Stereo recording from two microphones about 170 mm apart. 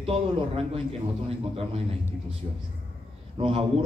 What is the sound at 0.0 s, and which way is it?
Speech, 35° right (ahead or behind).